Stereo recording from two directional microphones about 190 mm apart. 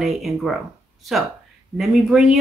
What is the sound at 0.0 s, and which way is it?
Speech, centre (ahead or behind).